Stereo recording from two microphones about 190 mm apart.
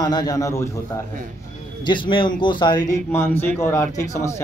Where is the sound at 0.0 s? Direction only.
20° left (ahead or behind).